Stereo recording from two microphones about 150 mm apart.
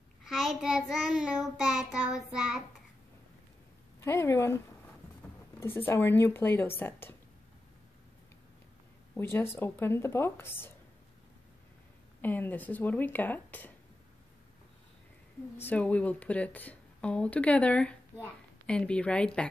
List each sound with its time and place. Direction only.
0.2 s child singing: centre (ahead or behind)
4.0 s speech: 15° left (ahead or behind)
5.6 s speech: 15° left (ahead or behind)
9.1 s speech: 15° left (ahead or behind)
12.2 s speech: 10° left (ahead or behind)
15.6 s speech: 10° left (ahead or behind)